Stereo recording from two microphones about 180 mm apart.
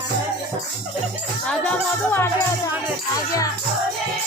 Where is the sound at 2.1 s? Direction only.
15° left (ahead or behind).